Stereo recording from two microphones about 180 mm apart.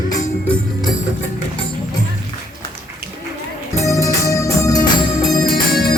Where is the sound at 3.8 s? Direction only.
15° left (ahead or behind).